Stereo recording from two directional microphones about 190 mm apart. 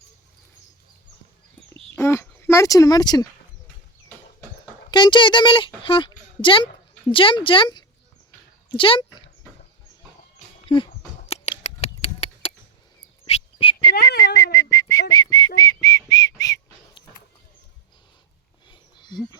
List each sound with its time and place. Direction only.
2.0 s speech: 15° left (ahead or behind)
4.9 s speech: 25° left (ahead or behind)
10.7 s speech: 25° left (ahead or behind)
11.3 s a sound: 35° left (ahead or behind)
13.2 s frog: 30° left (ahead or behind)
13.9 s whistling: 60° left (ahead or behind)
14.3 s a sound: 20° left (ahead or behind)
15.1 s whistling: 20° left (ahead or behind)
18.7 s a sound: 25° left (ahead or behind)